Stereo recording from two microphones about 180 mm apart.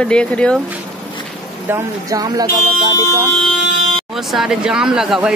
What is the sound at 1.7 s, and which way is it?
Speech, 20° right (ahead or behind).